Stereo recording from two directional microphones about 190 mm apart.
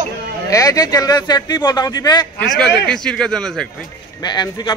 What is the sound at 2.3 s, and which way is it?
A man's voice, 5° left (ahead or behind).